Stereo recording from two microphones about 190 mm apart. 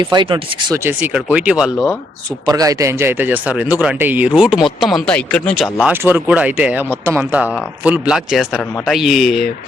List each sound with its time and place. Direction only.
0.0 s speech: 25° right (ahead or behind)
0.9 s speech: 10° right (ahead or behind)
2.5 s speech: 20° right (ahead or behind); by 5.6 s 5° left (ahead or behind)
5.7 s speech: 10° right (ahead or behind)